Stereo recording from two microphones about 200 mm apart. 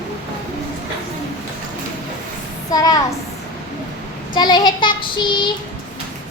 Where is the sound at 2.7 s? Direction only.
20° left (ahead or behind).